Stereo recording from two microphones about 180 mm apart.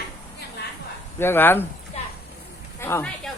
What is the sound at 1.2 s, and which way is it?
Speech, 10° left (ahead or behind).